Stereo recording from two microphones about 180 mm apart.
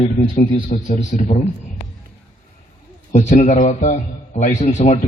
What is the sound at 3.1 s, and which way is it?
A man's voice, 40° left (ahead or behind).